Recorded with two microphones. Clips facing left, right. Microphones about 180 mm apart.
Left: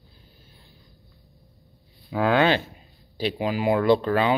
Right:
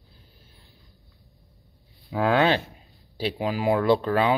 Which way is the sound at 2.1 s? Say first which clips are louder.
Left 1 dB; centre (ahead or behind).